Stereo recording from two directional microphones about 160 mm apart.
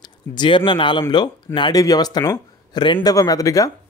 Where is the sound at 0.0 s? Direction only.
30° left (ahead or behind).